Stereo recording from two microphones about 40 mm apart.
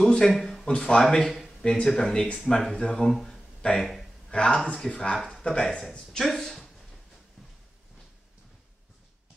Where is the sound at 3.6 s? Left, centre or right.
Left.